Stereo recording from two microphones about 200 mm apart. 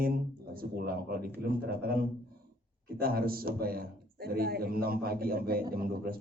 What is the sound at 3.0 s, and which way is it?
A man's voice, 50° right (ahead or behind).